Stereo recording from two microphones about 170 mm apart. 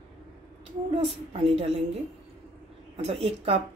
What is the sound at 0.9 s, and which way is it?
Speech, 35° right (ahead or behind).